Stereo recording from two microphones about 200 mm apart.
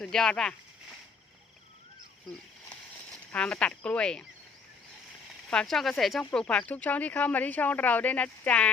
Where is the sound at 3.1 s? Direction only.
5° left (ahead or behind).